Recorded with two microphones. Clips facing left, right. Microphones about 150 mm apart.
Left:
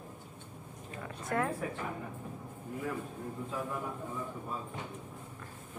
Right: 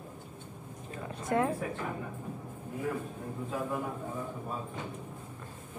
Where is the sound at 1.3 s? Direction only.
20° right (ahead or behind).